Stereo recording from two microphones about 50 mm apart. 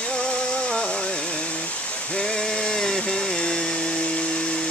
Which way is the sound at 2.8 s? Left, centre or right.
Centre.